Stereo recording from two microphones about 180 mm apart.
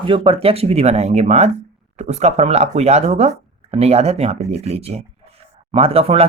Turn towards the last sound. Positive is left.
turn(degrees=-35)  # may be behind; listen again after turning